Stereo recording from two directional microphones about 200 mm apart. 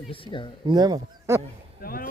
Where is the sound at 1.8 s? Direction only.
45° left (ahead or behind).